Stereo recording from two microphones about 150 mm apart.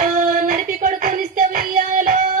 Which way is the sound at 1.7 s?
60° right (ahead or behind).